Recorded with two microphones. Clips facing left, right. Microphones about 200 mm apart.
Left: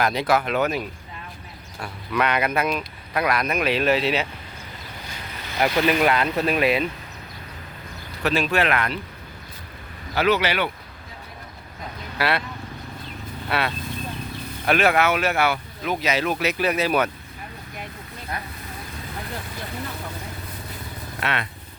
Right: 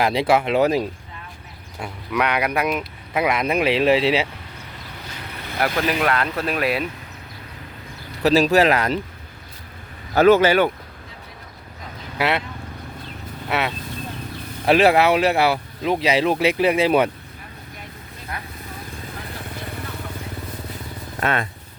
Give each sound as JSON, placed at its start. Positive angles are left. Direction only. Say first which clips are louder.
{"t": 0.0, "sound": "speech", "louder": "right 3 dB", "side_deg": -30}
{"t": 1.8, "sound": "speech", "louder": "right 1 dB", "side_deg": -10}
{"t": 5.5, "sound": "speech", "louder": "left 2 dB", "side_deg": 0}
{"t": 8.2, "sound": "speech", "louder": "right 6 dB", "side_deg": -35}
{"t": 10.2, "sound": "speech", "louder": "right 7 dB", "side_deg": -45}
{"t": 12.1, "sound": "speech", "louder": "right 2 dB", "side_deg": -20}
{"t": 13.5, "sound": "speech", "louder": "right 2 dB", "side_deg": -20}
{"t": 14.6, "sound": "speech", "louder": "right 5 dB", "side_deg": -30}
{"t": 21.2, "sound": "speech", "louder": "right 5 dB", "side_deg": -45}